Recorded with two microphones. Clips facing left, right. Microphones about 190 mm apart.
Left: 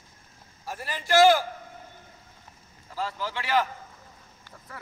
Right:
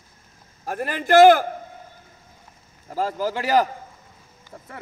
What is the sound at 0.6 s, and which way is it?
Speech, 55° right (ahead or behind).